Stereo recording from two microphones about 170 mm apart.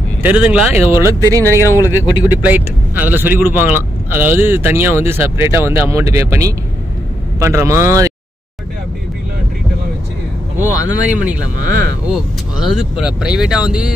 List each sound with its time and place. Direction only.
0.2 s speech: 10° right (ahead or behind)
1.6 s speech: 15° left (ahead or behind)
2.2 s speech: 10° right (ahead or behind)
10.7 s speech: 20° left (ahead or behind)
12.1 s speech: 5° right (ahead or behind)